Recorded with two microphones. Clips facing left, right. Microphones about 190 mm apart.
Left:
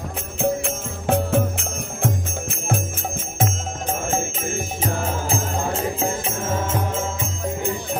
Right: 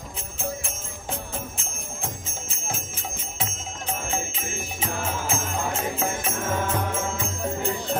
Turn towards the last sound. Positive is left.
turn(degrees=20)  # may be behind; listen again after turning